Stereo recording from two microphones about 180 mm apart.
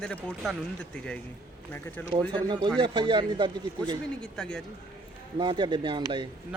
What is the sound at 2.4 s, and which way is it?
A man's voice, 25° right (ahead or behind).